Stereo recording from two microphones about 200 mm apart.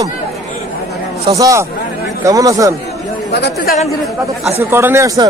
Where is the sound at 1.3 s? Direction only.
15° right (ahead or behind).